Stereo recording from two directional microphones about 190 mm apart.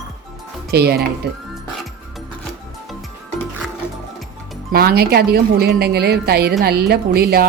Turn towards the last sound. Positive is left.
turn(degrees=-55)  # may be behind; listen again after turning